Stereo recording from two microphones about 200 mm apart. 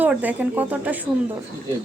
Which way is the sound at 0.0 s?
10° right (ahead or behind).